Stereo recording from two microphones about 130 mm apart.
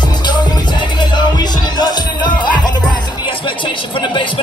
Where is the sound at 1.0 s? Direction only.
35° left (ahead or behind).